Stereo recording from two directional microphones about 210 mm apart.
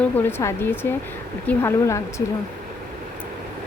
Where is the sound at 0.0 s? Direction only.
10° left (ahead or behind).